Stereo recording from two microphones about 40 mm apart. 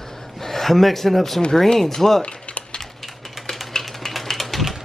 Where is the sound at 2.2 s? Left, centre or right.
Left.